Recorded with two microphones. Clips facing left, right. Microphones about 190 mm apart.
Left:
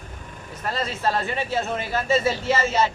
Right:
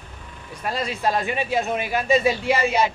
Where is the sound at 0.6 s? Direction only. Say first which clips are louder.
Right 1 dB; 15° right (ahead or behind).